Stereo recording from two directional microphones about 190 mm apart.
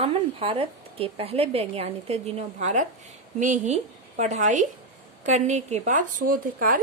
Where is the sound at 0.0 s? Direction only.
30° right (ahead or behind).